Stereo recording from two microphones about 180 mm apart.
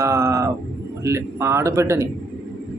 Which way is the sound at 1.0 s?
15° right (ahead or behind).